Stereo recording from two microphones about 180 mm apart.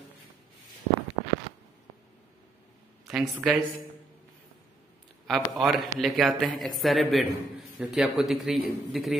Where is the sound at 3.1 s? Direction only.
Centre (ahead or behind).